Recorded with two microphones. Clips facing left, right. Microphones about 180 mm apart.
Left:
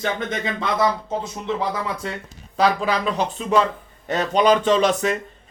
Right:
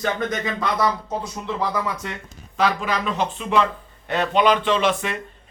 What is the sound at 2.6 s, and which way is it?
Speech, 35° left (ahead or behind).